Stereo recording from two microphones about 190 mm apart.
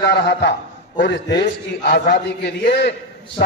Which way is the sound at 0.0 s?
65° left (ahead or behind).